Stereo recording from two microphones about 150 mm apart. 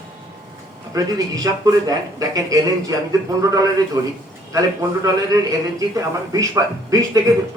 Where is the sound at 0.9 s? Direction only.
25° right (ahead or behind).